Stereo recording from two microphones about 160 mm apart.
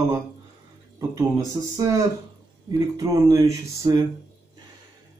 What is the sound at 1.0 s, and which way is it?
Speech, 20° right (ahead or behind).